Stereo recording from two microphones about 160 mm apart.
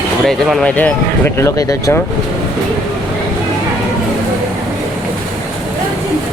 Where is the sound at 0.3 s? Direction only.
Centre (ahead or behind).